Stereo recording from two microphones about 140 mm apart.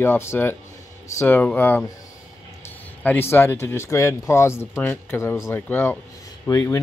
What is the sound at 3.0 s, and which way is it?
Speech, 15° left (ahead or behind).